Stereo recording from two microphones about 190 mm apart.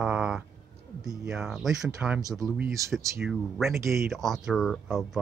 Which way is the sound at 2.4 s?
10° right (ahead or behind).